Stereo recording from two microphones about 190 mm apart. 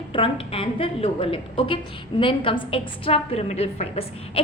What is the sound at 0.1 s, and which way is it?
A woman's voice, 30° left (ahead or behind).